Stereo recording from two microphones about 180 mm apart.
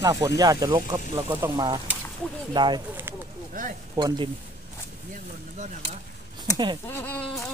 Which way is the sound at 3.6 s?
50° right (ahead or behind).